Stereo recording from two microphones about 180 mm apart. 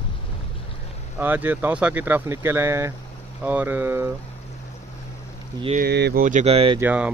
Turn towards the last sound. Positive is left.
turn(degrees=-10)  # may be behind; listen again after turning